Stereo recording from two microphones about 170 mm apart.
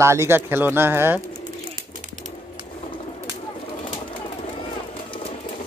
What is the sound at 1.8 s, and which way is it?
Bird, 45° right (ahead or behind).